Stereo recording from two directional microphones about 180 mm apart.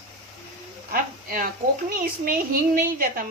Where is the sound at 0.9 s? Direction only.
50° right (ahead or behind).